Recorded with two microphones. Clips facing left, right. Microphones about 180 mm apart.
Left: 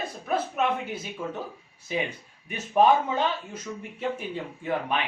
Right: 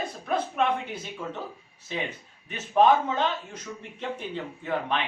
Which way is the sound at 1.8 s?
10° left (ahead or behind).